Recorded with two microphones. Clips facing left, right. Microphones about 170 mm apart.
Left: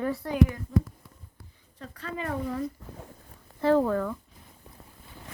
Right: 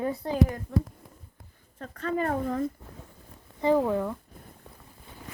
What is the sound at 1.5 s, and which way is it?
Speech, 50° right (ahead or behind).